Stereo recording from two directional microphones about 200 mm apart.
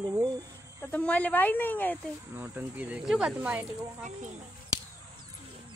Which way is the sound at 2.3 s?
10° right (ahead or behind).